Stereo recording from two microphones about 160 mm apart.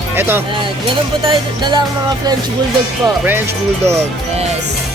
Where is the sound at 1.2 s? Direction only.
30° right (ahead or behind).